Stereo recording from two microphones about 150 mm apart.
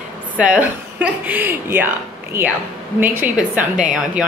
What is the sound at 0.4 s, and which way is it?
A woman's voice, 10° right (ahead or behind).